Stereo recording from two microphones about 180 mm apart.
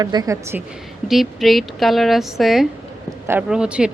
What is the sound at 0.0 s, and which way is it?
Speech, 20° right (ahead or behind).